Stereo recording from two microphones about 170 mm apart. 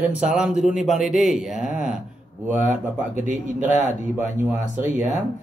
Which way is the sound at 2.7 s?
45° right (ahead or behind).